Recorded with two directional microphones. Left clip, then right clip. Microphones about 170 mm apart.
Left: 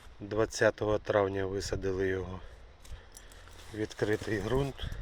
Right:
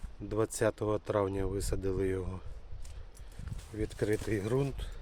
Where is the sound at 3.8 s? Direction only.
5° right (ahead or behind).